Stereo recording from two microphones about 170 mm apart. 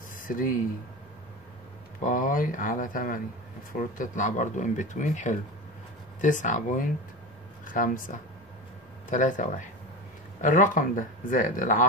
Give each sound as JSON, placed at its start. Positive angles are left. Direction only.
{"t": 0.3, "sound": "speech", "side_deg": 55}
{"t": 2.0, "sound": "speech", "side_deg": 55}